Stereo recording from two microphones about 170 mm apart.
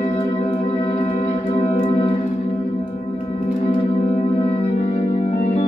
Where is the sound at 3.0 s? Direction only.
45° left (ahead or behind).